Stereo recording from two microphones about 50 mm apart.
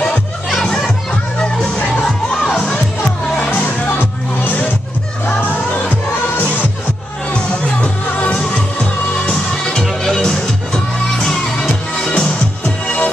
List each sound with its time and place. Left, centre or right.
0.7 s children playing: centre
2.5 s music: centre; by 6.4 s left
8.2 s music: left
9.3 s music: centre